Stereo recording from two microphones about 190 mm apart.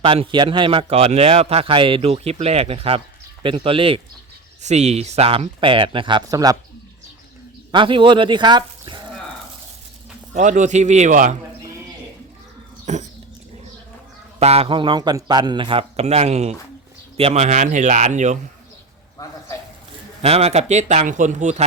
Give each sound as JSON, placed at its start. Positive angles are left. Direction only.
{"t": 0.0, "sound": "a man's voice", "side_deg": -25}
{"t": 7.7, "sound": "speech", "side_deg": -25}
{"t": 10.3, "sound": "speech", "side_deg": -40}
{"t": 12.8, "sound": "dog", "side_deg": -40}
{"t": 14.3, "sound": "a man's voice", "side_deg": -30}
{"t": 20.2, "sound": "speech", "side_deg": -35}